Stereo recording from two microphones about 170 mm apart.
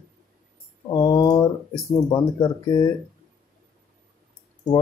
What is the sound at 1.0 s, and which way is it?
Speech, 25° left (ahead or behind).